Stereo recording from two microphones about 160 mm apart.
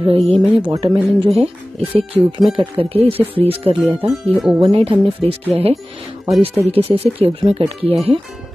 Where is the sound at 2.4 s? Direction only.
Centre (ahead or behind).